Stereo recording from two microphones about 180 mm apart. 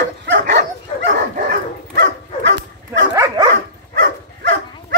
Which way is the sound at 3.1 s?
20° right (ahead or behind).